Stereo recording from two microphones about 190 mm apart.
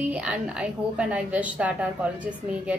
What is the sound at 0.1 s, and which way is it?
A woman's voice, 5° right (ahead or behind).